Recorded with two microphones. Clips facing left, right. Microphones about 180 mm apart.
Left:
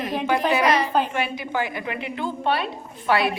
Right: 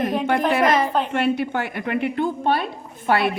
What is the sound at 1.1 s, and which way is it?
A woman's voice, 60° right (ahead or behind).